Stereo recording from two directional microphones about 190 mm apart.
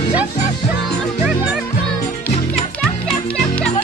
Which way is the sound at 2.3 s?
35° left (ahead or behind).